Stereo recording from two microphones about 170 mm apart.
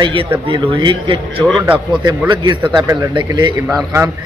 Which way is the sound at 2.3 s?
25° right (ahead or behind).